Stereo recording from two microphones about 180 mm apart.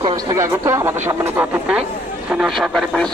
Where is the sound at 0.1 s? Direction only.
15° right (ahead or behind).